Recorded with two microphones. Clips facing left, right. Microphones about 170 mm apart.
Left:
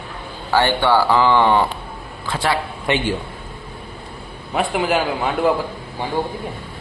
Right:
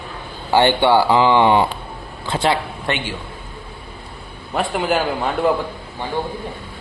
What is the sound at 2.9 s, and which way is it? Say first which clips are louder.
Speech: left 3 dB; 15° left (ahead or behind).